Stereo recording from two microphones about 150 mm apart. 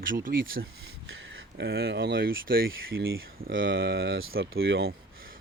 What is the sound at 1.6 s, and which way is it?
Speech, 90° right.